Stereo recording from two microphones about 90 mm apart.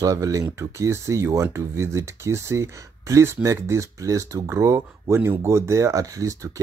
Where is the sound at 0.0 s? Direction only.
40° right (ahead or behind).